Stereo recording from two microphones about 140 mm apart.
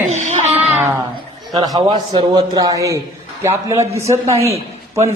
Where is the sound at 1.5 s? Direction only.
30° right (ahead or behind).